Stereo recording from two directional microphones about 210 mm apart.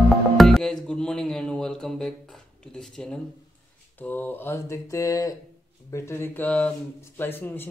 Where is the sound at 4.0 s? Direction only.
10° left (ahead or behind).